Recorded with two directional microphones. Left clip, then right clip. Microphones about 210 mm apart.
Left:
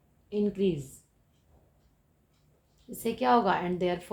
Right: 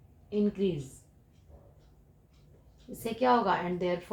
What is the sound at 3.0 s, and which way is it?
Speech, 45° left (ahead or behind).